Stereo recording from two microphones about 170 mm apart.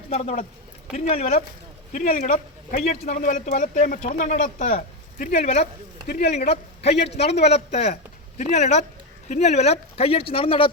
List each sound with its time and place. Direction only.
0.1 s speech: 35° left (ahead or behind)
6.1 s speech: 65° left (ahead or behind)
6.3 s a man's voice: 40° left (ahead or behind)